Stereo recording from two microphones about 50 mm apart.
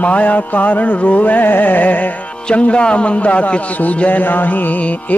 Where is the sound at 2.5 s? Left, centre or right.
Left.